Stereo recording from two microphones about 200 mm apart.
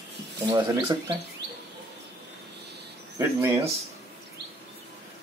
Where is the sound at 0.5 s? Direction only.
20° right (ahead or behind).